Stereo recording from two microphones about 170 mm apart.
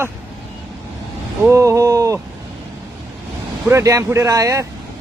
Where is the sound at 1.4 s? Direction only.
15° right (ahead or behind).